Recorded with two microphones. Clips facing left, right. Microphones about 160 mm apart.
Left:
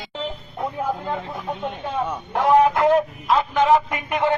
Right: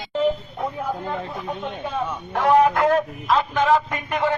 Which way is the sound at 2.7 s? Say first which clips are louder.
Left 1 dB; 15° left (ahead or behind).